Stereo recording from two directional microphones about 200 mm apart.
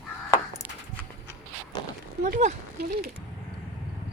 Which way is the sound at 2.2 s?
40° right (ahead or behind).